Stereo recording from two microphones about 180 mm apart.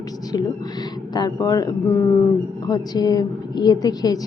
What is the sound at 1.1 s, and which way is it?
A woman's voice, 20° left (ahead or behind).